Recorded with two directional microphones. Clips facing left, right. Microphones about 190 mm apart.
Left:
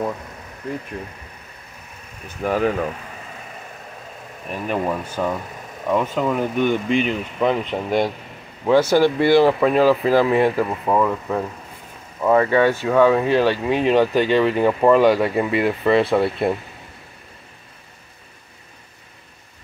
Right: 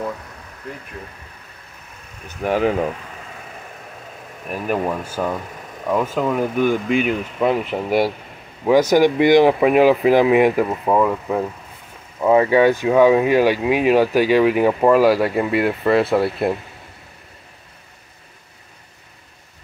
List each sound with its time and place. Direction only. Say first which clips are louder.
2.4 s speech: right 2 dB; 10° right (ahead or behind)
4.5 s speech: right 1 dB; 5° right (ahead or behind)